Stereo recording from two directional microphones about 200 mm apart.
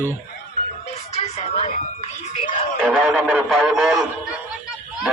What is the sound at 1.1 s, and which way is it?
Music, 30° left (ahead or behind).